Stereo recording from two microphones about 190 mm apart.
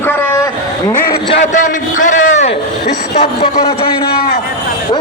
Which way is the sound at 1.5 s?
45° left (ahead or behind).